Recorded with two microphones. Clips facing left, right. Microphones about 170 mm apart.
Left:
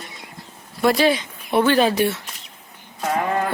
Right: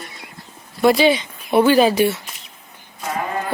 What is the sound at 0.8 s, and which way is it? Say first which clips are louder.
Speech: right 3 dB; centre (ahead or behind).